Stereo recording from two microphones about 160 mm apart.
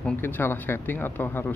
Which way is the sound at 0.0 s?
15° left (ahead or behind).